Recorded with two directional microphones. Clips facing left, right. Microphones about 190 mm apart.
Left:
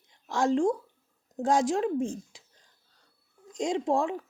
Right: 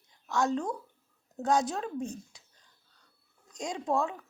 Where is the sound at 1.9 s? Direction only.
90° left.